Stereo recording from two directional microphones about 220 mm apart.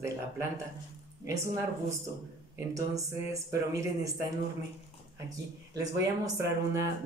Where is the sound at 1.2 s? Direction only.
15° right (ahead or behind).